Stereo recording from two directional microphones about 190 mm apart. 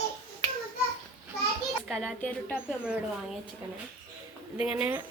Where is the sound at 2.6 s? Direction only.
5° right (ahead or behind).